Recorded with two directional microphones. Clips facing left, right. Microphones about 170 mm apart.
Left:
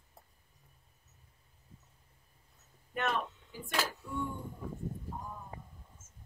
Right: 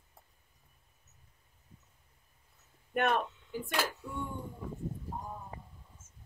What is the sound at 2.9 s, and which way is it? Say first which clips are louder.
Speech: right 4 dB; 55° right (ahead or behind).